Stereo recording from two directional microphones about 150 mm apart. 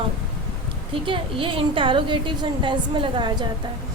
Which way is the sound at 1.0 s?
35° right (ahead or behind).